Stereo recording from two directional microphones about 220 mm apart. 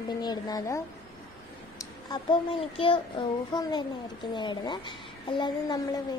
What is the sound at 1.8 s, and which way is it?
A child's voice, 20° left (ahead or behind).